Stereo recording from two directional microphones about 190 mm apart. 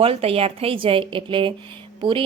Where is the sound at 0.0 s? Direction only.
30° right (ahead or behind).